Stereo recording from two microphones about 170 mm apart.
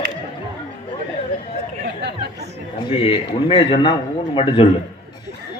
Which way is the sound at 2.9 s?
35° left (ahead or behind).